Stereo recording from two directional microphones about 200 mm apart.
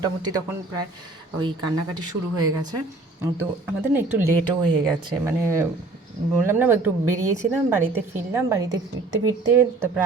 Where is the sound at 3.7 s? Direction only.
10° right (ahead or behind).